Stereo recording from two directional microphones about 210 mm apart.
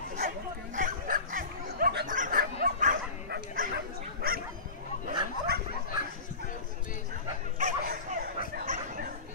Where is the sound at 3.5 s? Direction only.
45° right (ahead or behind).